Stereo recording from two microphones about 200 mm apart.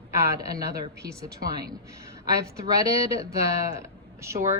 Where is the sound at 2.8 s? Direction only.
15° right (ahead or behind).